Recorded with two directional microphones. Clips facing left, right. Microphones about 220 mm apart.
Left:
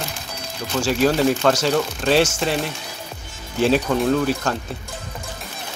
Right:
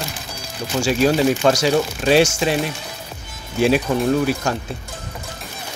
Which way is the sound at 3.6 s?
10° right (ahead or behind).